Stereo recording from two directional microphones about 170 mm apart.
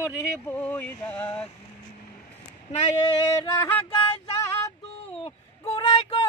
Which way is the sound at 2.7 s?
40° left (ahead or behind).